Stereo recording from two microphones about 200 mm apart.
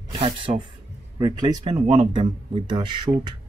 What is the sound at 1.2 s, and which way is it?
Speech, 20° right (ahead or behind).